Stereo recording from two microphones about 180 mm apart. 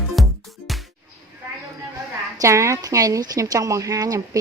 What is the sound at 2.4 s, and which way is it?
A woman's voice, 15° right (ahead or behind).